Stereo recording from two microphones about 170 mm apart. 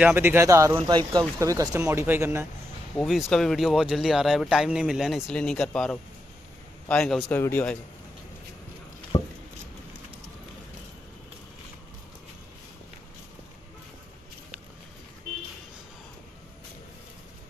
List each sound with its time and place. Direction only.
0.0 s speech: 15° right (ahead or behind)
3.0 s speech: centre (ahead or behind)
9.1 s patter: 40° left (ahead or behind)